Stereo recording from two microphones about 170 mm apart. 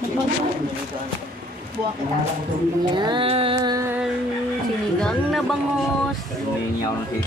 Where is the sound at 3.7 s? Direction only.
15° right (ahead or behind).